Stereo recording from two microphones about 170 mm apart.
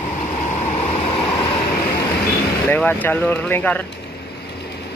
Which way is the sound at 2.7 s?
10° left (ahead or behind).